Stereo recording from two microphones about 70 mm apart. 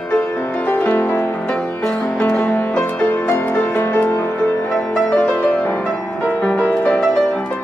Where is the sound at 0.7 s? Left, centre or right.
Left.